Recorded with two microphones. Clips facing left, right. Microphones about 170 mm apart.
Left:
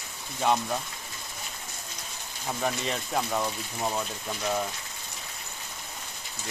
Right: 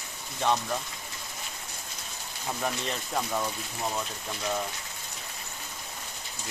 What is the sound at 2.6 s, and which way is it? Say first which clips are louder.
Speech: left 3 dB; 5° left (ahead or behind).